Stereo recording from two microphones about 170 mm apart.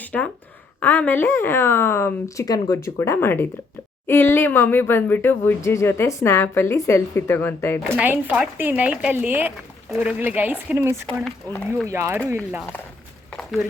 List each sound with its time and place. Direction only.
0.0 s a sound: 10° left (ahead or behind)
0.8 s speech: 10° left (ahead or behind)
7.9 s speech: 10° right (ahead or behind)